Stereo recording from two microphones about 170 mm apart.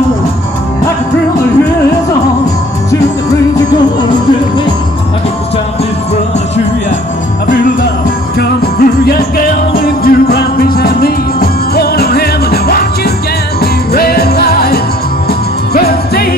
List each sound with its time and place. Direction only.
8.4 s music: 65° left (ahead or behind)